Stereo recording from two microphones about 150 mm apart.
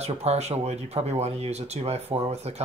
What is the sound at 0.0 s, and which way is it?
Speech, 45° right (ahead or behind).